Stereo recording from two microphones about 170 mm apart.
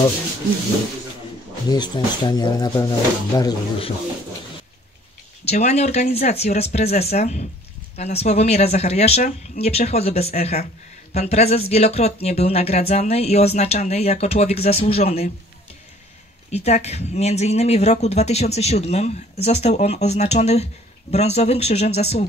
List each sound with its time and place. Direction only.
1.7 s speech: 25° left (ahead or behind)
5.4 s speech: 40° left (ahead or behind)
16.4 s speech: 40° left (ahead or behind)